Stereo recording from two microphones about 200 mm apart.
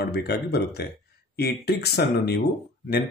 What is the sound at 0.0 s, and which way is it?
A man's voice, 55° left (ahead or behind).